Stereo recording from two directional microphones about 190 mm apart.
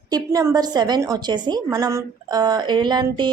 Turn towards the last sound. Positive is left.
turn(degrees=-25)  # may be behind; listen again after turning